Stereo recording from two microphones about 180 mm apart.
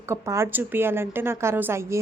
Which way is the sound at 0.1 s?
15° right (ahead or behind).